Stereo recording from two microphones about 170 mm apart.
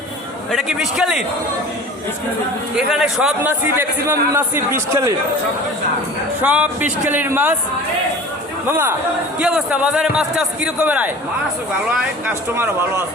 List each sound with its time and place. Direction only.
0.5 s a man's voice: 5° right (ahead or behind)
2.7 s a man's voice: 5° right (ahead or behind)
6.4 s a man's voice: 10° right (ahead or behind)
8.6 s a man's voice: 10° right (ahead or behind)
12.3 s a man's voice: 15° right (ahead or behind)